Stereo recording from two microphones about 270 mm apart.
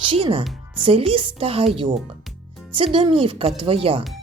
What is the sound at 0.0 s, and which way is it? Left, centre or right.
Speech, centre.